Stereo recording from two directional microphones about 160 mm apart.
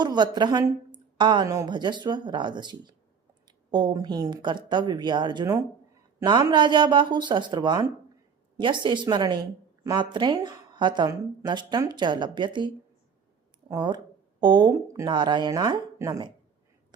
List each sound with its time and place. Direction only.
0.0 s a woman's voice: 25° right (ahead or behind)